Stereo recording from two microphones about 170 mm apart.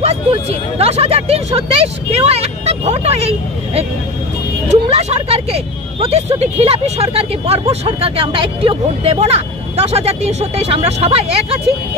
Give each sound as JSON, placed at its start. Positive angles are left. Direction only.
{"t": 0.0, "sound": "speech", "side_deg": -35}